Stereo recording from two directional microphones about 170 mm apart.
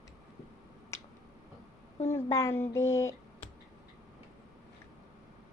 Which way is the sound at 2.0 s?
15° left (ahead or behind).